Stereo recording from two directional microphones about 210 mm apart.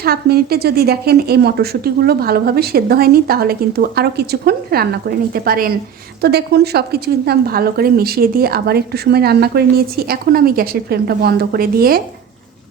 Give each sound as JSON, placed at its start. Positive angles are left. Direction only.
{"t": 0.0, "sound": "speech", "side_deg": -45}